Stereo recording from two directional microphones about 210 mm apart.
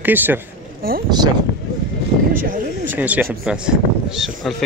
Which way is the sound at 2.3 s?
40° right (ahead or behind).